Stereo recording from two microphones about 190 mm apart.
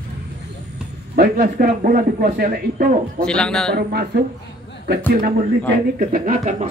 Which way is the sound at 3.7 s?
55° right (ahead or behind).